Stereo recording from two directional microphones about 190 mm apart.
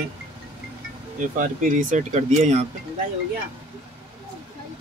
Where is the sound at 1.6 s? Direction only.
45° right (ahead or behind).